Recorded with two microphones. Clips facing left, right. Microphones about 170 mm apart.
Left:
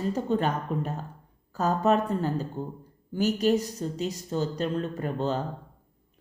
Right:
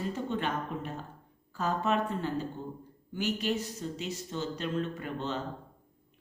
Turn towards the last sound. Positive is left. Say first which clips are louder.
# left 6 dB
turn(degrees=40)  # may be behind; listen again after turning